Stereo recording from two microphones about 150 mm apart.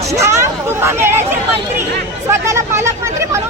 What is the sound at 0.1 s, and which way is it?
Hubbub, 20° right (ahead or behind).